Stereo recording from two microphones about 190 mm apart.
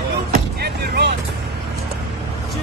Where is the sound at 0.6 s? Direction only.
60° right (ahead or behind).